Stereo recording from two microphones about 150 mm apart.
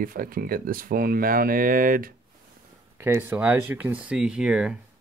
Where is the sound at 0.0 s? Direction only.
70° right (ahead or behind).